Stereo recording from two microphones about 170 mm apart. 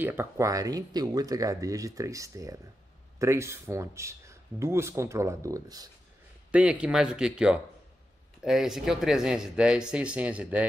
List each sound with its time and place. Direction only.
0.0 s speech: 10° right (ahead or behind)
6.5 s speech: 5° right (ahead or behind)